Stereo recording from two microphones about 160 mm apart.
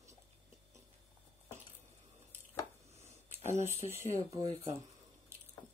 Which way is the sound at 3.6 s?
45° left (ahead or behind).